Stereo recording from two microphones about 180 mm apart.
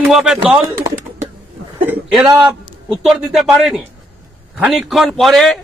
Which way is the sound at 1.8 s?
10° right (ahead or behind).